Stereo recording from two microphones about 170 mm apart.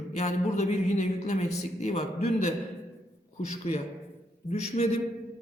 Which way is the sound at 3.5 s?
40° left (ahead or behind).